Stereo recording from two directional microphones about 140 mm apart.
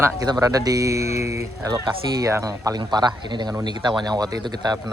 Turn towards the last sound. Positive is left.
turn(degrees=-30)  # may be behind; listen again after turning